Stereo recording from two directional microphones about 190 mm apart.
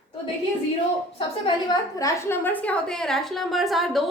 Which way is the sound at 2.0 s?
15° left (ahead or behind).